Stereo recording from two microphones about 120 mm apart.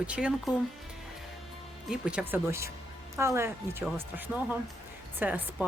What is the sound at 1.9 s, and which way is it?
Speech, 10° right (ahead or behind).